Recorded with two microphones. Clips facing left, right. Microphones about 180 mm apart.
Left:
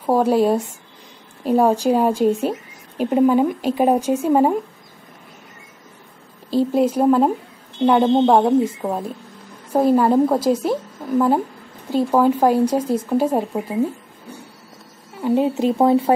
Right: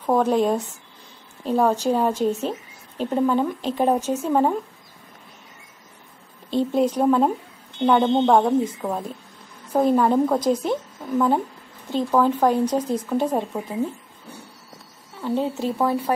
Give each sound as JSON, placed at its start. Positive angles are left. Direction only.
{"t": 0.0, "sound": "a woman's voice", "side_deg": 10}
{"t": 6.5, "sound": "a woman's voice", "side_deg": 5}
{"t": 15.2, "sound": "speech", "side_deg": 15}